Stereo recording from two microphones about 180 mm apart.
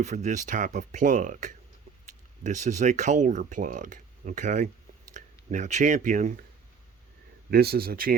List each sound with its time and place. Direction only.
0.0 s speech: 40° right (ahead or behind)
7.5 s speech: 60° right (ahead or behind)